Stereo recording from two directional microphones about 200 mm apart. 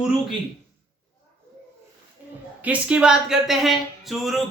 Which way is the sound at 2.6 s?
5° right (ahead or behind).